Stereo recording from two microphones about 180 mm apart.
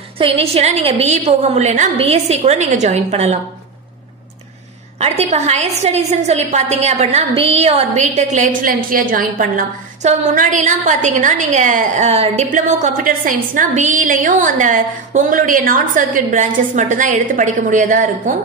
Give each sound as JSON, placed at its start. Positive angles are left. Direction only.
{"t": 0.2, "sound": "a woman's voice", "side_deg": -35}
{"t": 4.9, "sound": "a woman's voice", "side_deg": -35}